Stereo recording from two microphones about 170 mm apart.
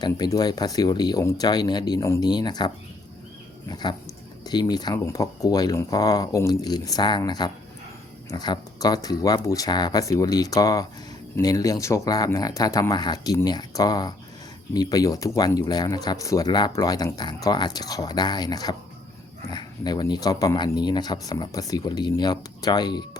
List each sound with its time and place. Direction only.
0.0 s speech: 25° left (ahead or behind)